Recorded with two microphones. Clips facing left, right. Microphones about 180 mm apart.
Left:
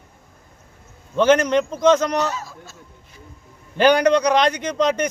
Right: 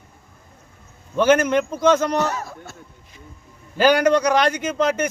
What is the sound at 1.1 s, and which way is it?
Speech, 10° right (ahead or behind).